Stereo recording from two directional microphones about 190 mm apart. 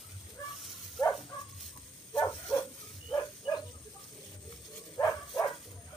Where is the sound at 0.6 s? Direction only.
Centre (ahead or behind).